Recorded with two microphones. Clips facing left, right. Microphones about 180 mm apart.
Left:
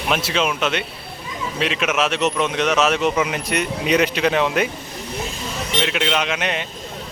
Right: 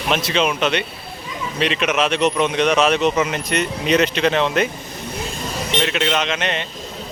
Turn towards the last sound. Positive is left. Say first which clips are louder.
# right 1 dB
turn(degrees=10)  # may be behind; listen again after turning